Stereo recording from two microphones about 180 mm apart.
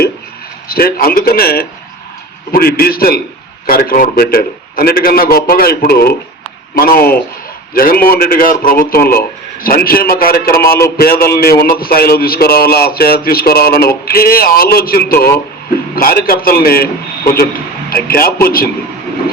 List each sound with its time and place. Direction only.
0.7 s a man's voice: 55° left (ahead or behind)